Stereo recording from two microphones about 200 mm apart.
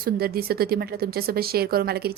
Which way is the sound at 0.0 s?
50° right (ahead or behind).